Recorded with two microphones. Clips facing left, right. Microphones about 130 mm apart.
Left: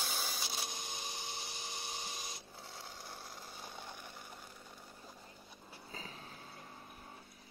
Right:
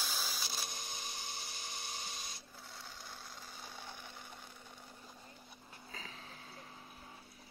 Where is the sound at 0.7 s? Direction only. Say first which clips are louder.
Left 2 dB; 15° left (ahead or behind).